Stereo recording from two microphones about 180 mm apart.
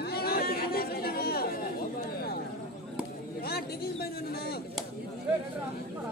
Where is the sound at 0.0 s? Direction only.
60° left (ahead or behind).